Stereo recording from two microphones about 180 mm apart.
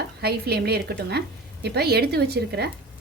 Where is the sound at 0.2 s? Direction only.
60° right (ahead or behind).